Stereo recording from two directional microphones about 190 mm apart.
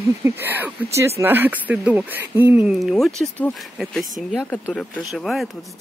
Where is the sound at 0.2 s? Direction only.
10° right (ahead or behind).